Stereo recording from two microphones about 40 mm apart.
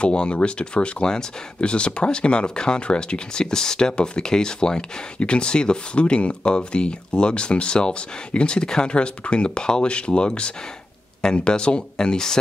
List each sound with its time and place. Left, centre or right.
0.0 s speech: left